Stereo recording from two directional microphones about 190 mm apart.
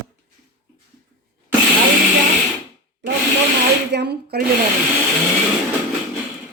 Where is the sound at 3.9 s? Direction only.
60° right (ahead or behind).